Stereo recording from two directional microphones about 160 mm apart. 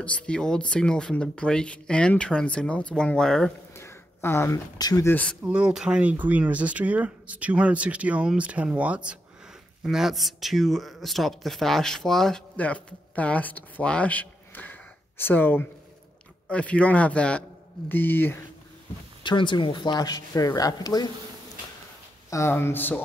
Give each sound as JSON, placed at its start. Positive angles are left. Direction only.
{"t": 0.0, "sound": "speech", "side_deg": 5}
{"t": 3.7, "sound": "speech", "side_deg": 15}
{"t": 5.4, "sound": "a man's voice", "side_deg": -5}
{"t": 19.2, "sound": "speech", "side_deg": 30}
{"t": 22.3, "sound": "a man's voice", "side_deg": 15}